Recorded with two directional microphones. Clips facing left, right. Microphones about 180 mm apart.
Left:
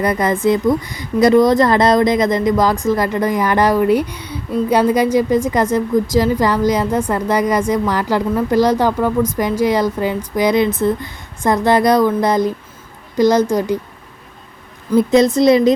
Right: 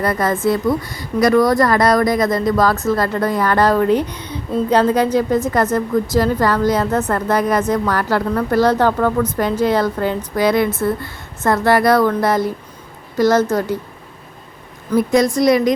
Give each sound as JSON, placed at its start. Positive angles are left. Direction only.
{"t": 0.0, "sound": "speech", "side_deg": 20}
{"t": 14.9, "sound": "speech", "side_deg": 25}